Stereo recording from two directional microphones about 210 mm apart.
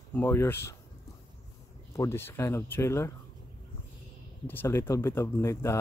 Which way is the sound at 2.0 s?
10° left (ahead or behind).